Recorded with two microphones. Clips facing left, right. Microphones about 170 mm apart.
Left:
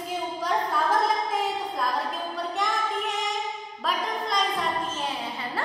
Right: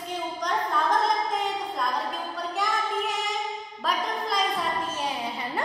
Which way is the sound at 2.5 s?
Centre (ahead or behind).